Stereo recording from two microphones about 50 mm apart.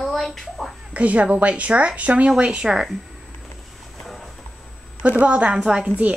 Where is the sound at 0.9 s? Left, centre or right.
Right.